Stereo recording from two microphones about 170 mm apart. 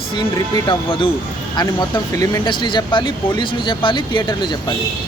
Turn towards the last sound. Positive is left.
turn(degrees=25)  # may be behind; listen again after turning